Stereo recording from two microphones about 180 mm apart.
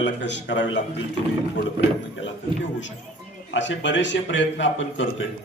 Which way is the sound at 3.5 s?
90° left.